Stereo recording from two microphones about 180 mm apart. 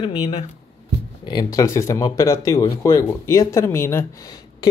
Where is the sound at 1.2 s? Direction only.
20° left (ahead or behind).